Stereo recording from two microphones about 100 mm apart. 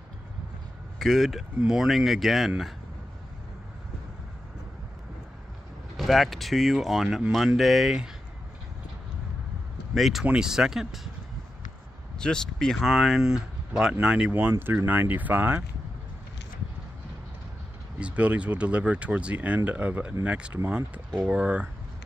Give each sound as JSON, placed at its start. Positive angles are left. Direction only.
{"t": 0.9, "sound": "speech", "side_deg": 0}
{"t": 5.9, "sound": "speech", "side_deg": 0}
{"t": 9.9, "sound": "speech", "side_deg": 0}
{"t": 12.2, "sound": "speech", "side_deg": 5}
{"t": 14.5, "sound": "speech", "side_deg": -30}
{"t": 14.9, "sound": "speech", "side_deg": -20}
{"t": 17.9, "sound": "speech", "side_deg": -15}